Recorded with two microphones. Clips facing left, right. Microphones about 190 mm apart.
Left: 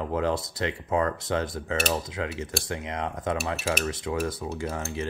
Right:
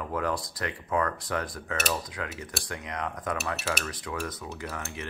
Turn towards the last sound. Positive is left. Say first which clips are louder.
# left 6 dB
turn(degrees=30)  # may be behind; listen again after turning